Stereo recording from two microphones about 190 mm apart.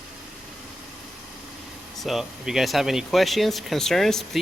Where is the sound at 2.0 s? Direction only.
Centre (ahead or behind).